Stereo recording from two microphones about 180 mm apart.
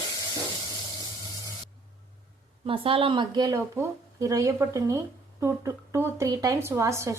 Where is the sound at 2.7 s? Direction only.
30° right (ahead or behind).